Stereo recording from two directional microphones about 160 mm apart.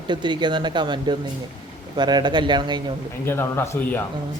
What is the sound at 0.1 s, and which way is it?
Speech, 30° right (ahead or behind).